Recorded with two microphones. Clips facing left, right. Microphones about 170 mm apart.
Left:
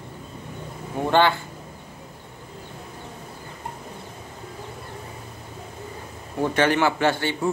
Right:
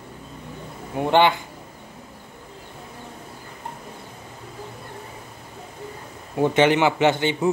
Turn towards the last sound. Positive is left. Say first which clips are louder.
# right 3 dB
turn(degrees=-20)  # may be behind; listen again after turning